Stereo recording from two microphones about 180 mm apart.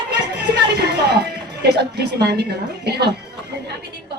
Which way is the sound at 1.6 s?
65° right (ahead or behind).